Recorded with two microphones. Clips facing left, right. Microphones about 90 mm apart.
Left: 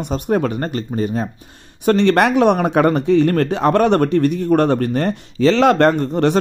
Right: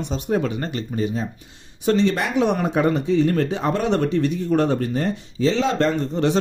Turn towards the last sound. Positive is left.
turn(degrees=55)  # may be behind; listen again after turning